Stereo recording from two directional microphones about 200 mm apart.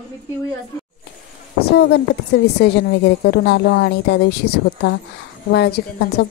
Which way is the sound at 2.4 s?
55° left (ahead or behind).